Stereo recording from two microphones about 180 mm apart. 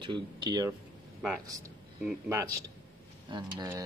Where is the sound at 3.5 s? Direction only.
20° right (ahead or behind).